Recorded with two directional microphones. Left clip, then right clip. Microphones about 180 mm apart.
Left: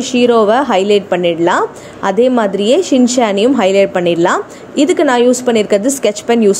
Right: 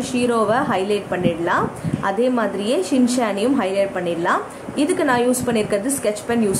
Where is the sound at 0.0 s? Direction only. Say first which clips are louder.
Left 9 dB; 40° left (ahead or behind).